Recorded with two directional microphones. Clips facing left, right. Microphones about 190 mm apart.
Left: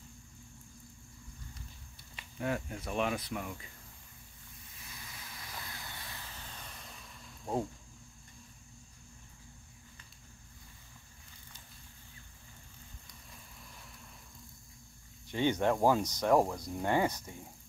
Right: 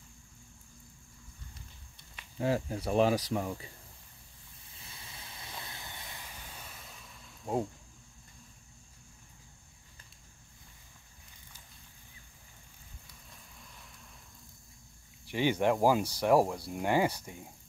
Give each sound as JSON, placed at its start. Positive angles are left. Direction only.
{"t": 2.3, "sound": "speech", "side_deg": -30}
{"t": 4.8, "sound": "vehicle", "side_deg": -25}
{"t": 15.3, "sound": "speech", "side_deg": -10}